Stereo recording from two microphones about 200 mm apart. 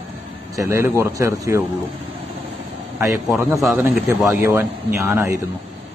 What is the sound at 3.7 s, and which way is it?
Speech, 10° right (ahead or behind).